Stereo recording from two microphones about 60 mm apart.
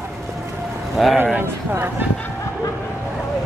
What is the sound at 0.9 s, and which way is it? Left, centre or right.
Speech, centre.